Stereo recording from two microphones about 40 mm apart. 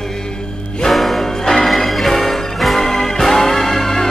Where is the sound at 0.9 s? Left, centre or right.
Centre.